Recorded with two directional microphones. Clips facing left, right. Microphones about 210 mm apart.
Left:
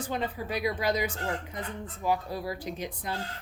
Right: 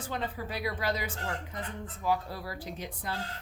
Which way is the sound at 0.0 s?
15° left (ahead or behind).